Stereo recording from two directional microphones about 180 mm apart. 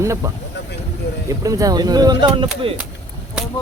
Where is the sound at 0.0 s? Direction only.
15° right (ahead or behind).